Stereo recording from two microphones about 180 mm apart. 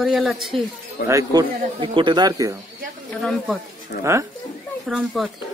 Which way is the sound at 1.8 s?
30° right (ahead or behind).